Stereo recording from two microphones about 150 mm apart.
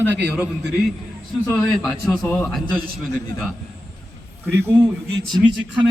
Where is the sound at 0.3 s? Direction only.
5° right (ahead or behind).